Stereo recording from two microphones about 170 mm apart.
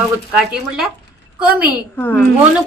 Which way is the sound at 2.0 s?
10° left (ahead or behind).